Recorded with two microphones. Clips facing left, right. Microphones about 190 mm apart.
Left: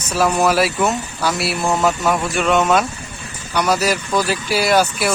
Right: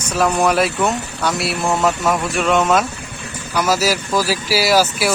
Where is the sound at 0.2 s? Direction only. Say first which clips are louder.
Even; centre (ahead or behind).